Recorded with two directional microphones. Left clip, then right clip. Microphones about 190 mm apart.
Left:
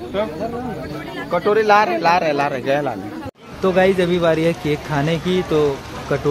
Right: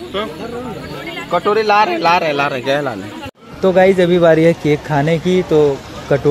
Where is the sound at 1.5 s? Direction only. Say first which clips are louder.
Right 1 dB; 45° right (ahead or behind).